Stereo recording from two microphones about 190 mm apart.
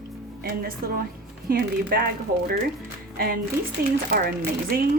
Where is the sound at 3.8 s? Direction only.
50° right (ahead or behind).